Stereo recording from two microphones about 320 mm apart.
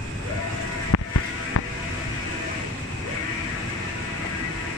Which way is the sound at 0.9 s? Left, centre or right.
Left.